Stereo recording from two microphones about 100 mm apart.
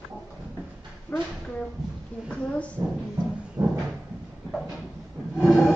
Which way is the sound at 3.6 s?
35° right (ahead or behind).